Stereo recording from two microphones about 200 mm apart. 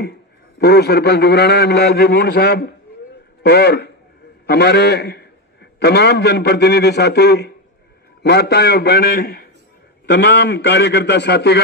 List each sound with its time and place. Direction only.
0.6 s a man's voice: 50° left (ahead or behind)